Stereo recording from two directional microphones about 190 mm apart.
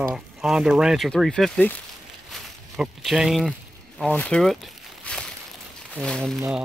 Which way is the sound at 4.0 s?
5° left (ahead or behind).